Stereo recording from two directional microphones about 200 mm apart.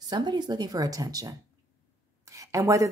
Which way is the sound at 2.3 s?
15° right (ahead or behind).